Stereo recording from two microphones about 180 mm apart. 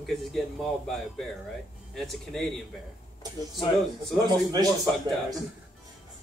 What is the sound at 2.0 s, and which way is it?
Speech, centre (ahead or behind).